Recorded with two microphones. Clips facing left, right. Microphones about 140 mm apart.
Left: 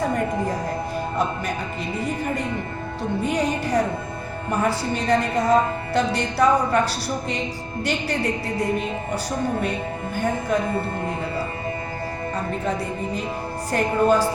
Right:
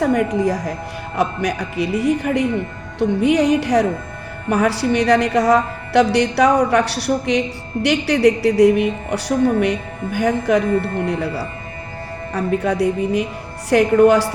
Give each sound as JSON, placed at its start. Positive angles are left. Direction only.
{"t": 0.0, "sound": "a woman's voice", "side_deg": -70}
{"t": 12.3, "sound": "a woman's voice", "side_deg": -70}